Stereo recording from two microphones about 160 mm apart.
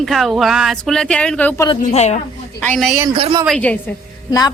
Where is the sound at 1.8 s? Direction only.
45° left (ahead or behind).